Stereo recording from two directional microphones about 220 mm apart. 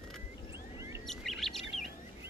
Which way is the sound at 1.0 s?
Centre (ahead or behind).